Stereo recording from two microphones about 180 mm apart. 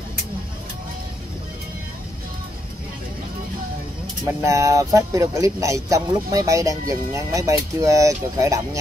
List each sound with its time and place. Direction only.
4.4 s speech: 15° right (ahead or behind)